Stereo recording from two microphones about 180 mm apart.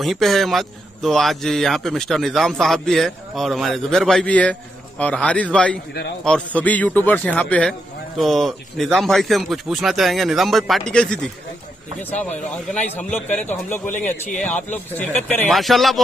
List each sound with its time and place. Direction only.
0.0 s a man's voice: centre (ahead or behind)